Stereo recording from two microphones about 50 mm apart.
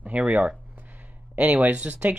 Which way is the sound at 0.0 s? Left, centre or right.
Right.